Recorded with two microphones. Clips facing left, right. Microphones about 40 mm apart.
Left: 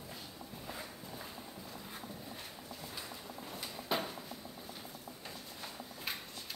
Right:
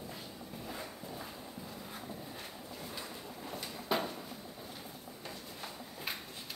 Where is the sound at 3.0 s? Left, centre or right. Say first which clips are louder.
Right 1 dB; centre.